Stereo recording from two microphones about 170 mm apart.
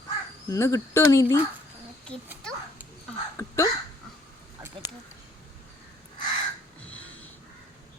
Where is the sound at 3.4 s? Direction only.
15° left (ahead or behind).